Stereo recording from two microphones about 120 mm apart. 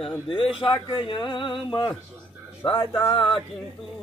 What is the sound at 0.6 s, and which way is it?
Speech, 45° left (ahead or behind).